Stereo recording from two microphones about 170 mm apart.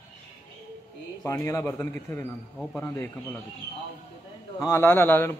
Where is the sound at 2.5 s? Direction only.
5° left (ahead or behind).